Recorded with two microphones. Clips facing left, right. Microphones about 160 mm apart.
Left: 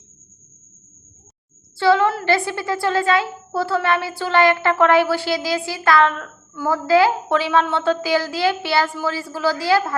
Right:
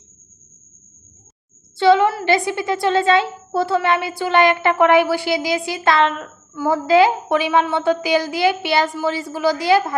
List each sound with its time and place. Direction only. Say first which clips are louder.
1.8 s a woman's voice: right 2 dB; 20° right (ahead or behind)